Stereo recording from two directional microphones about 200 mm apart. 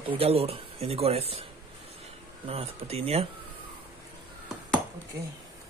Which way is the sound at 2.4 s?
30° right (ahead or behind).